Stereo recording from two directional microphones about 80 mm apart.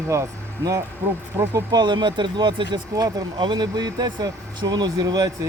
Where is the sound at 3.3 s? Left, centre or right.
Right.